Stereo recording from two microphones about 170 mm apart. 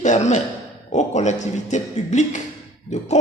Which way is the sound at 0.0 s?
45° left (ahead or behind).